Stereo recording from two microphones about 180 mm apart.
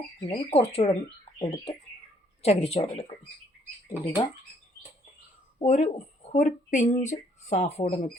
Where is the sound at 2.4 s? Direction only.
35° left (ahead or behind).